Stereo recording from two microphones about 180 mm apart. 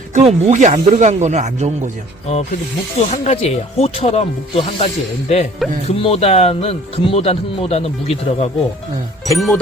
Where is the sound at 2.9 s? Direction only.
40° left (ahead or behind).